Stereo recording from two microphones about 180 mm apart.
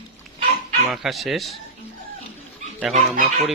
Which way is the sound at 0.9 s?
Centre (ahead or behind).